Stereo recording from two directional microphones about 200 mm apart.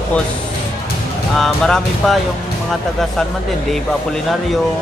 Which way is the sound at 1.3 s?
Centre (ahead or behind).